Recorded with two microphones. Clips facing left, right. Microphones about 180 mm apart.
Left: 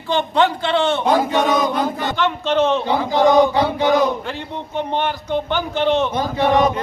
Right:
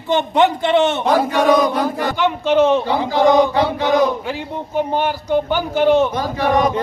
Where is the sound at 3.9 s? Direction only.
10° right (ahead or behind).